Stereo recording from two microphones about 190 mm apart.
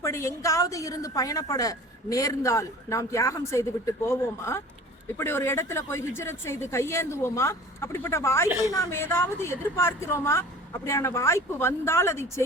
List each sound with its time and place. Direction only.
0.0 s a woman's voice: 15° left (ahead or behind)